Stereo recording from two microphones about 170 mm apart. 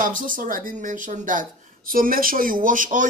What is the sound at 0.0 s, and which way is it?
Speech, 55° right (ahead or behind).